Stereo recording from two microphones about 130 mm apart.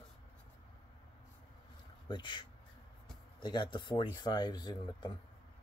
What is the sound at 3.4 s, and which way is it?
Speech, 35° left (ahead or behind).